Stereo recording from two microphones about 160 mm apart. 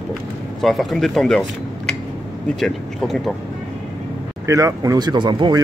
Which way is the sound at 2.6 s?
Centre (ahead or behind).